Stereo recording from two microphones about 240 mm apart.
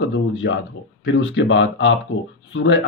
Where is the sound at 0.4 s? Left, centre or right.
Left.